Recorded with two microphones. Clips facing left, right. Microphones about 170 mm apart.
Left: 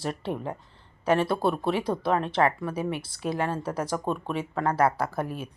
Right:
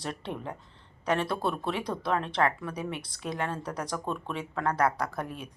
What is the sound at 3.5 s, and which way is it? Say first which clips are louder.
Speech: left 5 dB; 25° left (ahead or behind).